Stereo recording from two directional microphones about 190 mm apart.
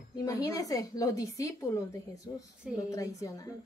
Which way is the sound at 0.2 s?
20° left (ahead or behind).